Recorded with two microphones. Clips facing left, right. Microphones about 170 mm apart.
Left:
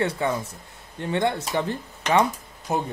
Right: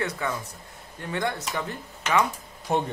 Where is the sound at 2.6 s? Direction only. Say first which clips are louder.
Right 1 dB; 5° left (ahead or behind).